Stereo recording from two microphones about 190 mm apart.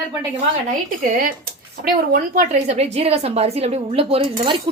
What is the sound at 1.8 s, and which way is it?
A woman's voice, 45° right (ahead or behind).